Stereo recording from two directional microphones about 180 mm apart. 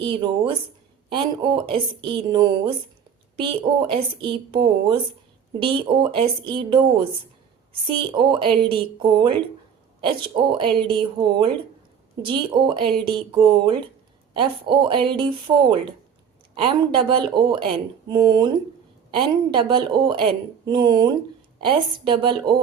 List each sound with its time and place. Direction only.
0.0 s speech: 25° right (ahead or behind)